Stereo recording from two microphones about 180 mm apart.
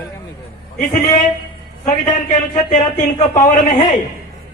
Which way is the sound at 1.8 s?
45° left (ahead or behind).